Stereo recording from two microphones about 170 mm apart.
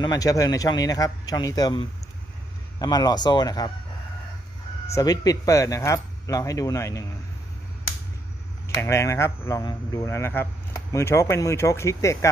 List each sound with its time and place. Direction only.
0.0 s speech: 20° left (ahead or behind)
4.9 s speech: 20° left (ahead or behind)
8.6 s speech: 15° left (ahead or behind)